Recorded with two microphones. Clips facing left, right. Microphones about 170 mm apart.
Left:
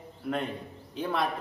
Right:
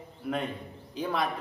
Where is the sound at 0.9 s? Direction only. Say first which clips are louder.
Even; centre (ahead or behind).